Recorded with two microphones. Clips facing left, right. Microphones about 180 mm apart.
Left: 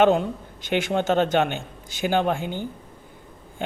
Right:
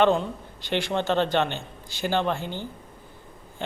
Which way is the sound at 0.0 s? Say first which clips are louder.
Left 3 dB; 50° left (ahead or behind).